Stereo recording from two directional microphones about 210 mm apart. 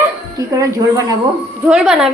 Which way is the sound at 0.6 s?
15° right (ahead or behind).